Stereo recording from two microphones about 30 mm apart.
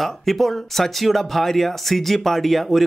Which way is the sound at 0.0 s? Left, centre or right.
Centre.